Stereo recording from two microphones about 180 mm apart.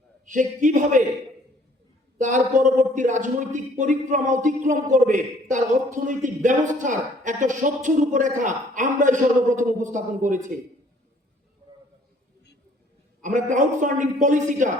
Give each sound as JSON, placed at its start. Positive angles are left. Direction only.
{"t": 0.3, "sound": "a man's voice", "side_deg": -45}
{"t": 2.2, "sound": "a man's voice", "side_deg": -45}
{"t": 13.2, "sound": "a man's voice", "side_deg": -45}